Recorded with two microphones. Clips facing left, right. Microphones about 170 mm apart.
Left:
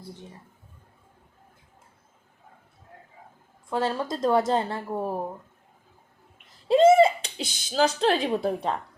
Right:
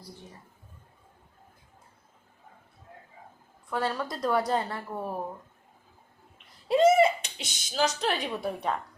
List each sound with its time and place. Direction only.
3.7 s speech: 25° left (ahead or behind)
6.7 s speech: 25° left (ahead or behind)